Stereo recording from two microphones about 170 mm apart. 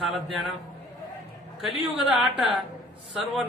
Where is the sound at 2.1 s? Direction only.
Centre (ahead or behind).